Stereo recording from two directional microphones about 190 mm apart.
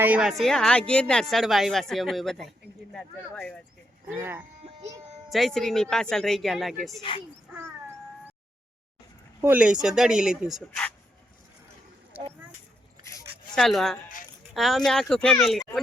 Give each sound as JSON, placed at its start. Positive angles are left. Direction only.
{"t": 0.0, "sound": "speech", "side_deg": -5}
{"t": 4.1, "sound": "speech", "side_deg": -10}
{"t": 5.3, "sound": "speech", "side_deg": 0}
{"t": 9.4, "sound": "speech", "side_deg": -10}
{"t": 12.1, "sound": "a sound", "side_deg": -10}
{"t": 13.6, "sound": "speech", "side_deg": 0}